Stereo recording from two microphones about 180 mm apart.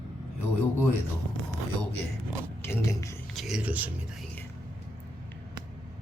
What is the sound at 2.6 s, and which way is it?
Speech, 15° left (ahead or behind).